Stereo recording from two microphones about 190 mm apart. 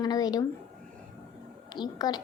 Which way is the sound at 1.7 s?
20° left (ahead or behind).